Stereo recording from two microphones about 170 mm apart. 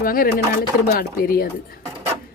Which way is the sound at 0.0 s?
55° left (ahead or behind).